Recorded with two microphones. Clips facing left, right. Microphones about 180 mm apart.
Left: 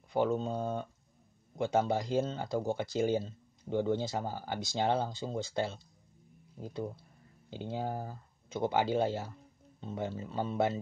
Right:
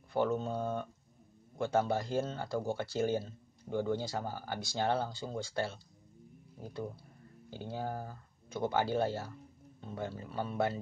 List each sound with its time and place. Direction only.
0.1 s speech: 15° left (ahead or behind)